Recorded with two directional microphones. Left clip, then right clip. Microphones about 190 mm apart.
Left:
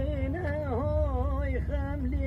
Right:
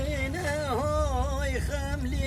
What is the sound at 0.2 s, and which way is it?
Carnatic music, 15° right (ahead or behind).